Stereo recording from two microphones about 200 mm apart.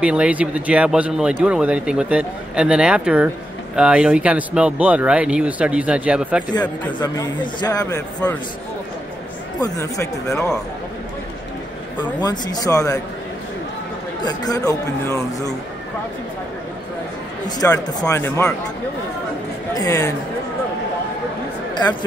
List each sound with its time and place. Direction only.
0.0 s speech: 5° right (ahead or behind)
6.9 s a man's voice: 20° left (ahead or behind)
9.6 s speech: 15° left (ahead or behind)
12.0 s a man's voice: 20° left (ahead or behind)
14.2 s speech: 20° left (ahead or behind)
17.5 s speech: 20° left (ahead or behind)
19.7 s speech: 15° left (ahead or behind)